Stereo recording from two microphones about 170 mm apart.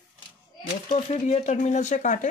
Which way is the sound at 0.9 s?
40° left (ahead or behind).